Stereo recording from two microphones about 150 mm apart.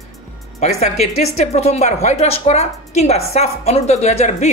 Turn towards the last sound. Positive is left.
turn(degrees=50)  # may be behind; listen again after turning